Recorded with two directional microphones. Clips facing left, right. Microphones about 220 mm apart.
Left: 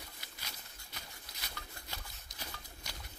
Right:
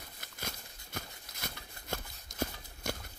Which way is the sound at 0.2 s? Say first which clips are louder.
Right 8 dB; 50° right (ahead or behind).